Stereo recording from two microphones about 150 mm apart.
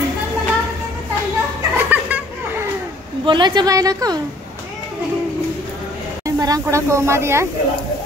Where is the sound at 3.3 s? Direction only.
30° right (ahead or behind).